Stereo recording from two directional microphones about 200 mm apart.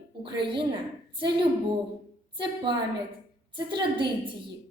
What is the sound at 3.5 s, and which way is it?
Speech, 25° right (ahead or behind).